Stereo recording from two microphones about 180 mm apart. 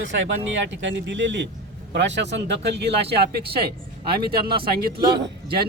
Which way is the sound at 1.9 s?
80° right.